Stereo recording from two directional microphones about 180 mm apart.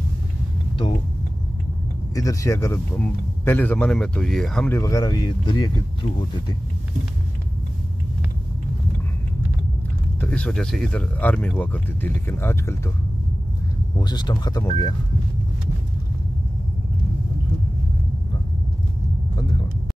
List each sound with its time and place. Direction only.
2.1 s speech: 15° left (ahead or behind)
4.7 s speech: 20° left (ahead or behind)
10.2 s speech: 5° left (ahead or behind)
13.9 s speech: 25° left (ahead or behind)